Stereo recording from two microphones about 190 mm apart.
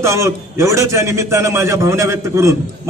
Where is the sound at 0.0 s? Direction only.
15° right (ahead or behind).